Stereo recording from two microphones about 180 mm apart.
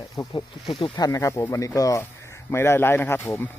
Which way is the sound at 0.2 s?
25° left (ahead or behind).